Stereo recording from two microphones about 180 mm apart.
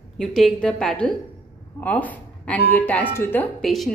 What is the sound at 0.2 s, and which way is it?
A woman's voice, centre (ahead or behind).